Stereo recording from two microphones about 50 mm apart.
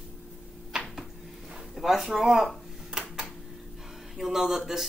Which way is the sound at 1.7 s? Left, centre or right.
Centre.